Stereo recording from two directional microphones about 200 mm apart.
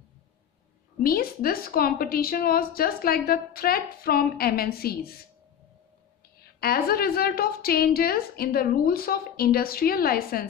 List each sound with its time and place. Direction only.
1.0 s a woman's voice: 50° left (ahead or behind)
6.6 s a woman's voice: 50° left (ahead or behind)